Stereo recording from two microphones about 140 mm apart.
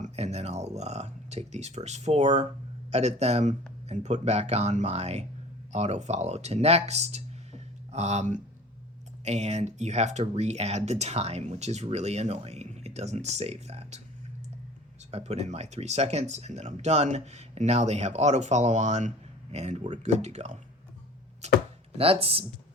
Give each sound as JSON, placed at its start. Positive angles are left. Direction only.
{"t": 0.0, "sound": "a sound", "side_deg": -50}
{"t": 2.9, "sound": "speech", "side_deg": -50}
{"t": 15.1, "sound": "speech", "side_deg": -50}